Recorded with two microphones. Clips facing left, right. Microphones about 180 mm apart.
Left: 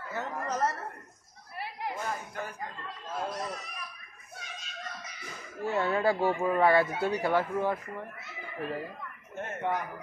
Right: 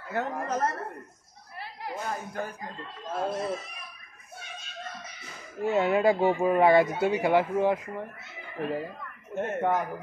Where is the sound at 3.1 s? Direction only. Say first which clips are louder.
Right 5 dB; 25° right (ahead or behind).